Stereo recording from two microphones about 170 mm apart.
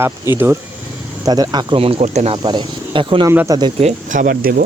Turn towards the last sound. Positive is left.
turn(degrees=-60)  # may be behind; listen again after turning